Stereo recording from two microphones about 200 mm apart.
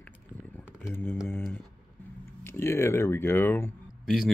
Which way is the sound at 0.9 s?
10° left (ahead or behind).